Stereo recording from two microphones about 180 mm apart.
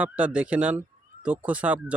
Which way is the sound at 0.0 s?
5° right (ahead or behind).